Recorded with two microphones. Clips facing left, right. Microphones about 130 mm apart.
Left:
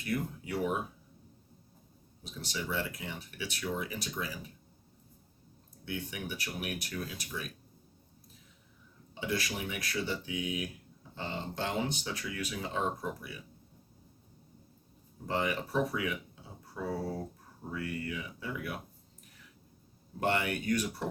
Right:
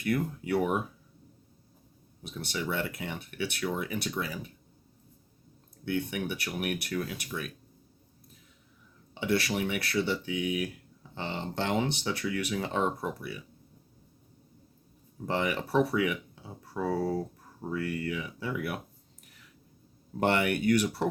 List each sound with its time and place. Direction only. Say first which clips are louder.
0.0 s speech: right 5 dB; 60° right (ahead or behind)
2.2 s speech: right 5 dB; 60° right (ahead or behind)
5.8 s speech: right 8 dB; 65° right (ahead or behind)
9.2 s speech: right 6 dB; 70° right (ahead or behind)
15.3 s speech: right 3 dB; 70° right (ahead or behind)
17.6 s speech: right 5 dB; 75° right (ahead or behind)
20.1 s speech: right 5 dB; 65° right (ahead or behind)